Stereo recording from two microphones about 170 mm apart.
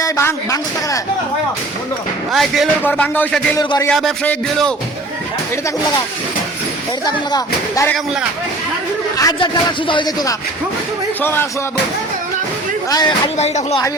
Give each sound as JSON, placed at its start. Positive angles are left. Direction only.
{"t": 0.0, "sound": "speech", "side_deg": 15}
{"t": 2.3, "sound": "speech", "side_deg": 0}
{"t": 2.8, "sound": "speech", "side_deg": 10}
{"t": 3.6, "sound": "speech", "side_deg": 25}
{"t": 3.8, "sound": "speech", "side_deg": 5}
{"t": 7.0, "sound": "speech", "side_deg": 25}
{"t": 9.1, "sound": "speech", "side_deg": 20}
{"t": 11.2, "sound": "speech", "side_deg": 15}
{"t": 12.9, "sound": "speech", "side_deg": 25}